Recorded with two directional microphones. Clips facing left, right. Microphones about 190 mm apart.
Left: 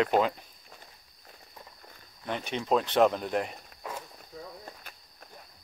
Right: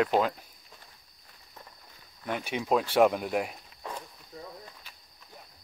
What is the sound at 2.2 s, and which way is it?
Speech, 10° right (ahead or behind).